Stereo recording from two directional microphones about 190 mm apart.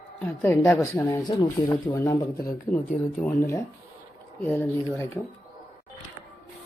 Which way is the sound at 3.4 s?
15° left (ahead or behind).